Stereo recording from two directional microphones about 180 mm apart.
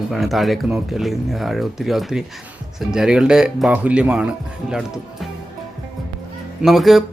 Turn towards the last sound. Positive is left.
turn(degrees=0)  # may be behind; listen again after turning